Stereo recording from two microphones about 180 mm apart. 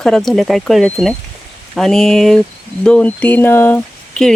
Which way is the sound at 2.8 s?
5° left (ahead or behind).